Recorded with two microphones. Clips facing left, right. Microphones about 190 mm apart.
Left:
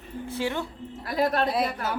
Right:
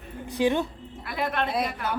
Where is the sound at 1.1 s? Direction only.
40° left (ahead or behind).